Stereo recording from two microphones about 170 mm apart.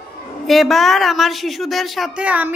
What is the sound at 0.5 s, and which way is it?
A woman's voice, centre (ahead or behind).